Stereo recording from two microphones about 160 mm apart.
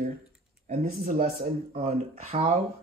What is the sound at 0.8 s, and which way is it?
Speech, 60° right (ahead or behind).